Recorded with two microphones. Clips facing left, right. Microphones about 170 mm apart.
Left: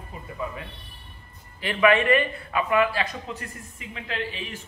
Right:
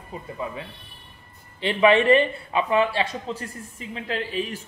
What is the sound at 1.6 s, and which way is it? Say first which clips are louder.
A man's voice: right 2 dB; 25° right (ahead or behind).